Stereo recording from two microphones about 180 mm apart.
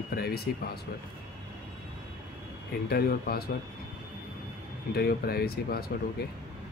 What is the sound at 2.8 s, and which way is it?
Speech, 60° left (ahead or behind).